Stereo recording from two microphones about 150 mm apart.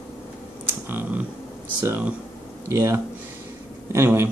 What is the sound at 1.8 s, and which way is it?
Speech, 15° right (ahead or behind).